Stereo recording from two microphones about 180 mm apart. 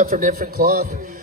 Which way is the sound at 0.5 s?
60° right (ahead or behind).